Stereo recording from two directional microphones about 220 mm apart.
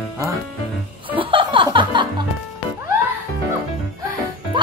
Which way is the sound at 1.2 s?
25° right (ahead or behind).